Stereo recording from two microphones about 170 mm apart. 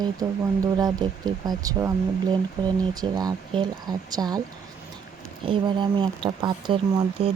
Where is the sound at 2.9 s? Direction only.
25° right (ahead or behind).